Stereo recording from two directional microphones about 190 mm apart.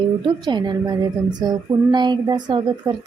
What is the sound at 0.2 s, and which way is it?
A woman's voice, 25° right (ahead or behind).